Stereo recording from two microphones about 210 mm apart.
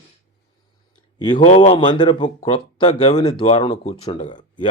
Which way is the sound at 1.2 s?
25° left (ahead or behind).